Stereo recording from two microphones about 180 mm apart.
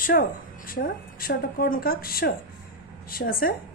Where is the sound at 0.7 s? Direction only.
55° left (ahead or behind).